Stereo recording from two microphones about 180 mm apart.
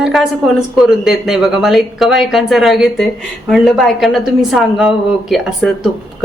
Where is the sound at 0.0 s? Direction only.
Centre (ahead or behind).